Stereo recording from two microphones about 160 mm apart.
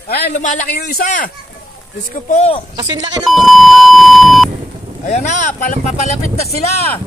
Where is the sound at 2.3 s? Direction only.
40° left (ahead or behind).